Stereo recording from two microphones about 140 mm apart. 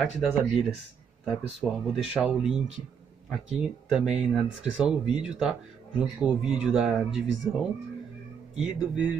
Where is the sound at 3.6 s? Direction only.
5° right (ahead or behind).